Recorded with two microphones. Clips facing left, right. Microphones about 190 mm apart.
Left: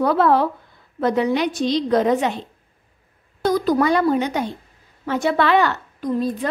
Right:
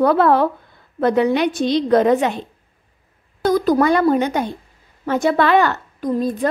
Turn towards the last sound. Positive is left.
turn(degrees=-50)  # may be behind; listen again after turning